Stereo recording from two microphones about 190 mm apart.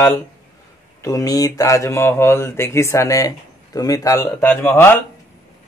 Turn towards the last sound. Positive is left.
turn(degrees=10)  # may be behind; listen again after turning